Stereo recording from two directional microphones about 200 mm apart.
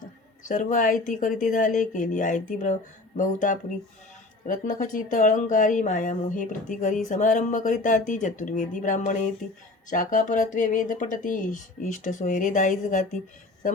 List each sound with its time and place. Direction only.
0.4 s speech: 40° left (ahead or behind)